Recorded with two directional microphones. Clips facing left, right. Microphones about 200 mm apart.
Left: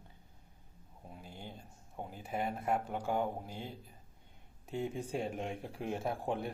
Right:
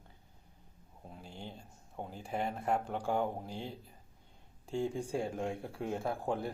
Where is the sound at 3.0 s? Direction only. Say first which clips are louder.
Right 1 dB; 15° left (ahead or behind).